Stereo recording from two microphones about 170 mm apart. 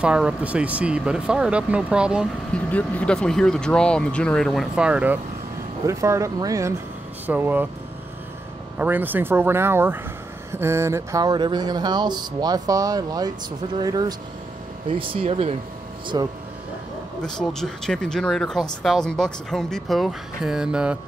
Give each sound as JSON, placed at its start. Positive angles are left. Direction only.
{"t": 0.0, "sound": "speech", "side_deg": -5}
{"t": 2.5, "sound": "speech", "side_deg": 10}
{"t": 8.7, "sound": "speech", "side_deg": -10}
{"t": 14.9, "sound": "speech", "side_deg": -35}
{"t": 17.2, "sound": "speech", "side_deg": 5}